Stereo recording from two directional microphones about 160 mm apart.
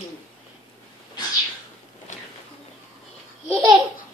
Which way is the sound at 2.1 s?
50° left (ahead or behind).